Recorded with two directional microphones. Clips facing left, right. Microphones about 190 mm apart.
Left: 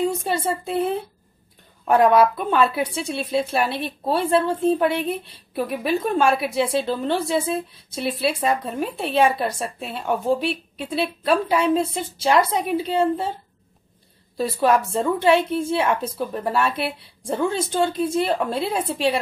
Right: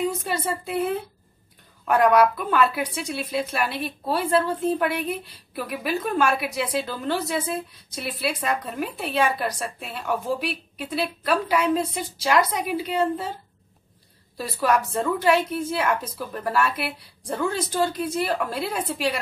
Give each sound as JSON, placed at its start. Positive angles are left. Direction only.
{"t": 0.0, "sound": "speech", "side_deg": 25}
{"t": 14.3, "sound": "speech", "side_deg": 25}